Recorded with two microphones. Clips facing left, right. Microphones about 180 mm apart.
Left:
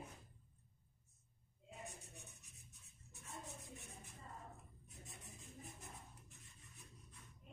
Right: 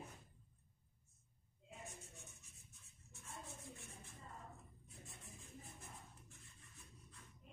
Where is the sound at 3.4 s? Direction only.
15° left (ahead or behind).